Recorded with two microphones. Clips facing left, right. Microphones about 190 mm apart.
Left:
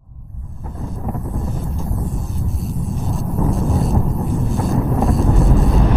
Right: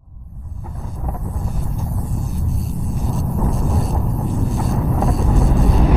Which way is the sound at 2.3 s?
Centre (ahead or behind).